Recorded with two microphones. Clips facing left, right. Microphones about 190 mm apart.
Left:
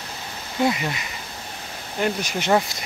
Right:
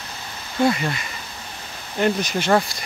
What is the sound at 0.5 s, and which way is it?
Speech, 10° left (ahead or behind).